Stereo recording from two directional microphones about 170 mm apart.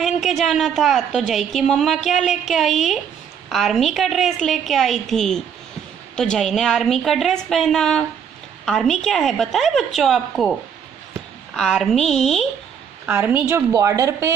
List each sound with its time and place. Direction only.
0.0 s a woman's voice: centre (ahead or behind)
13.0 s a woman's voice: 10° right (ahead or behind)